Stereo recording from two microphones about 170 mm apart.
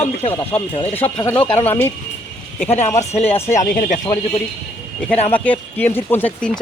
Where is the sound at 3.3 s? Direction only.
45° left (ahead or behind).